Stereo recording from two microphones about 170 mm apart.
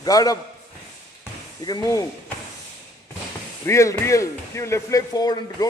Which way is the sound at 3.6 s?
15° left (ahead or behind).